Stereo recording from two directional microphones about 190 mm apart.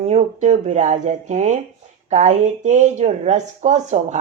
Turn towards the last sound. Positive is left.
turn(degrees=-35)  # may be behind; listen again after turning